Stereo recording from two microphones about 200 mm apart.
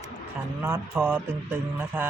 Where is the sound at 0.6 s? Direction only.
10° right (ahead or behind).